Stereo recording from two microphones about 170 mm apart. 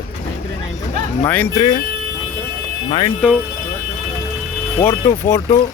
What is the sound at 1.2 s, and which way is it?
Speech, 10° left (ahead or behind).